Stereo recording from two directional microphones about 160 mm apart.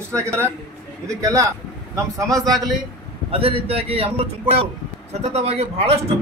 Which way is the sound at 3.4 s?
40° right (ahead or behind).